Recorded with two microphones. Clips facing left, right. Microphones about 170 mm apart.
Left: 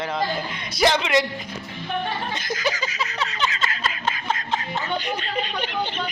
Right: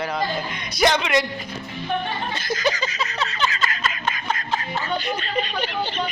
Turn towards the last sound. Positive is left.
turn(degrees=15)  # may be behind; listen again after turning